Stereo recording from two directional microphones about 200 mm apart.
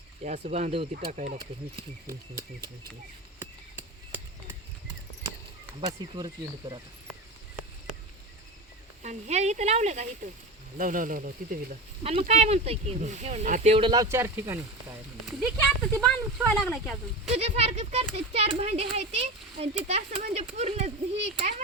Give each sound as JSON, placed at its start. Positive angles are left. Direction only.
{"t": 0.2, "sound": "speech", "side_deg": -35}
{"t": 2.0, "sound": "speech", "side_deg": -15}
{"t": 3.4, "sound": "a sound", "side_deg": -10}
{"t": 6.1, "sound": "speech", "side_deg": -20}
{"t": 9.0, "sound": "speech", "side_deg": -35}
{"t": 12.3, "sound": "speech", "side_deg": -30}
{"t": 15.3, "sound": "speech", "side_deg": -5}
{"t": 17.3, "sound": "speech", "side_deg": -30}